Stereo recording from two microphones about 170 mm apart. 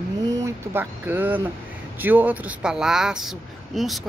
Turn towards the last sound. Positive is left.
turn(degrees=0)  # may be behind; listen again after turning